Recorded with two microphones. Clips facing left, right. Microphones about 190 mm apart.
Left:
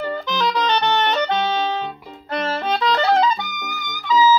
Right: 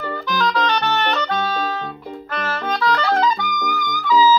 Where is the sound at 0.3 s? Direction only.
20° left (ahead or behind).